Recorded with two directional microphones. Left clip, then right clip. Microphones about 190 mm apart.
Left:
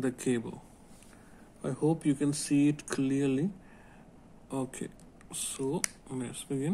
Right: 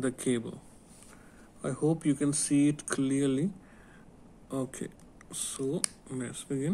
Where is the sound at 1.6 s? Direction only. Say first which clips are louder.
Even; 10° right (ahead or behind).